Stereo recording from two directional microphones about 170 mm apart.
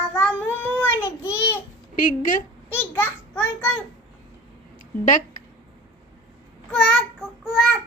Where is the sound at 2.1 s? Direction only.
50° left (ahead or behind).